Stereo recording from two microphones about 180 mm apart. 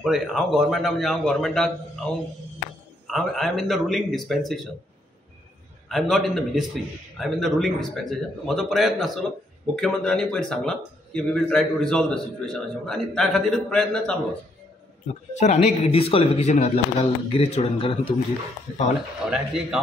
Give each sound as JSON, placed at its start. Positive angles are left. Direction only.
{"t": 0.0, "sound": "a man's voice", "side_deg": 0}
{"t": 5.9, "sound": "a man's voice", "side_deg": 0}
{"t": 15.3, "sound": "speech", "side_deg": 40}
{"t": 19.2, "sound": "a man's voice", "side_deg": -5}